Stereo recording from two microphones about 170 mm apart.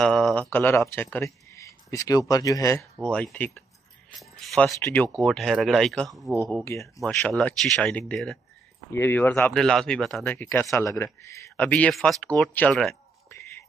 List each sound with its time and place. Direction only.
0.0 s a sound: centre (ahead or behind)
0.5 s speech: 10° left (ahead or behind)
3.0 s speech: 5° left (ahead or behind)
6.6 s speech: 15° left (ahead or behind)
7.0 s speech: 5° left (ahead or behind)
13.3 s a sound: 15° left (ahead or behind)